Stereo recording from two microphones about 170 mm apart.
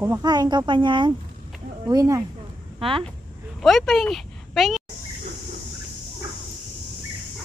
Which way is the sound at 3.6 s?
Centre (ahead or behind).